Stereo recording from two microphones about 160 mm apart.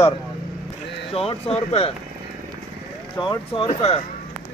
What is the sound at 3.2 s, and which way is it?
Speech, 30° left (ahead or behind).